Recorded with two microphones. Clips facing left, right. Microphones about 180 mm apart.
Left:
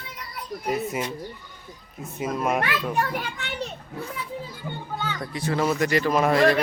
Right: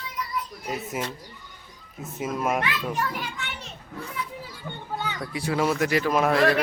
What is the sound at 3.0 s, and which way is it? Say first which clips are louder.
Speech: left 3 dB; 55° left (ahead or behind).